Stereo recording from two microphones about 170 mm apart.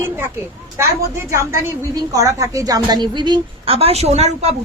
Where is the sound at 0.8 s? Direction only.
15° right (ahead or behind).